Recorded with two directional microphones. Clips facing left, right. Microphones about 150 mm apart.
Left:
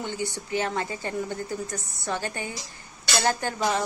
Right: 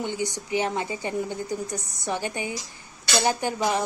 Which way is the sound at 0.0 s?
15° right (ahead or behind).